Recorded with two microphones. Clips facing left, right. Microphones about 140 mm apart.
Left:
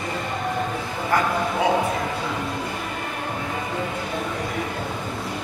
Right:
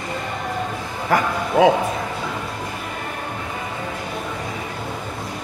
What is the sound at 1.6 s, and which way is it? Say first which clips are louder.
Speech: right 9 dB; 90° right.